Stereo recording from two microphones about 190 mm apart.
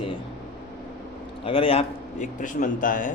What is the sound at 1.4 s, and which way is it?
A man's voice, 30° left (ahead or behind).